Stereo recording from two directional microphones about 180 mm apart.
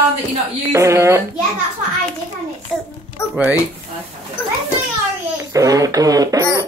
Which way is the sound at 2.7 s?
Centre (ahead or behind).